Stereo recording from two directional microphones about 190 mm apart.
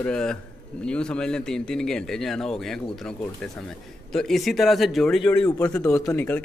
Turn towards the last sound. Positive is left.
turn(degrees=15)  # may be behind; listen again after turning